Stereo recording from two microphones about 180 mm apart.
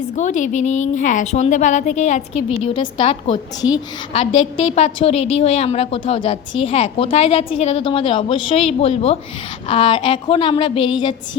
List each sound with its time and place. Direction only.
0.2 s a woman's voice: 45° left (ahead or behind)
2.7 s a woman's voice: 30° left (ahead or behind)